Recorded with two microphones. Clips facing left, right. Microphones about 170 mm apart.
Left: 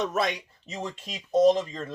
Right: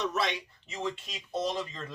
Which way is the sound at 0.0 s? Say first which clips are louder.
Left 4 dB; 50° left (ahead or behind).